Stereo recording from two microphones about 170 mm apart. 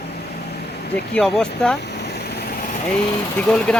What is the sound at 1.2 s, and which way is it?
Speech, 5° left (ahead or behind).